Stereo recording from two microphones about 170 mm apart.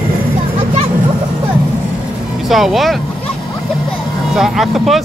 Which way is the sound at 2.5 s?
Centre (ahead or behind).